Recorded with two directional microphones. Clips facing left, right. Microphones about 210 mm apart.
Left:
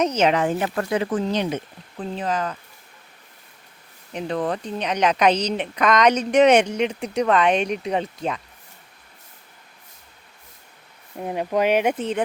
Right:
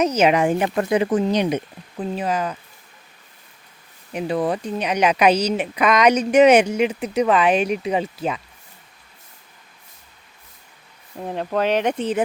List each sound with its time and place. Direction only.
0.0 s a woman's voice: 10° right (ahead or behind)
4.1 s a woman's voice: 10° right (ahead or behind)
11.2 s speech: 10° left (ahead or behind)